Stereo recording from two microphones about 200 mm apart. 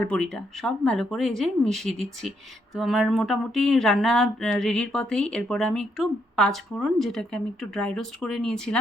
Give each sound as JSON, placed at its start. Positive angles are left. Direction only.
{"t": 0.0, "sound": "speech", "side_deg": 5}